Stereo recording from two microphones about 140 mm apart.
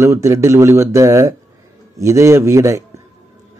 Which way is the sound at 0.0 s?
20° right (ahead or behind).